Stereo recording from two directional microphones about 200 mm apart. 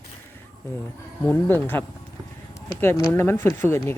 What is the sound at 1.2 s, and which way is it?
Speech, 10° left (ahead or behind).